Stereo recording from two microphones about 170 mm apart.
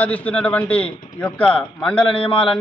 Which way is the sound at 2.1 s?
30° left (ahead or behind).